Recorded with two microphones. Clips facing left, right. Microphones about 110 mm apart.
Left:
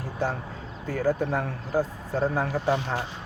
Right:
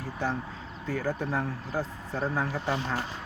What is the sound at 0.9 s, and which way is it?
Speech, 40° left (ahead or behind).